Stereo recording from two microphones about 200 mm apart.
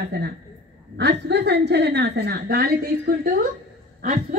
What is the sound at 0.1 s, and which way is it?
A woman's voice, 55° right (ahead or behind).